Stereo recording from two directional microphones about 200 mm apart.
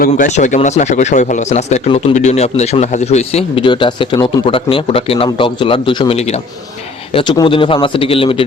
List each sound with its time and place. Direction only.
0.0 s speech: 40° left (ahead or behind)